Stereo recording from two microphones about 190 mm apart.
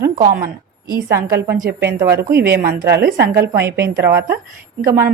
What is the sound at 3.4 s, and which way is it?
Speech, 15° right (ahead or behind).